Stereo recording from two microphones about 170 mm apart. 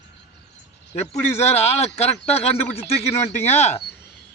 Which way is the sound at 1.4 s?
40° left (ahead or behind).